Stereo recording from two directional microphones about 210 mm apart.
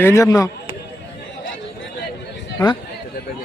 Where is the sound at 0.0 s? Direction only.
15° left (ahead or behind).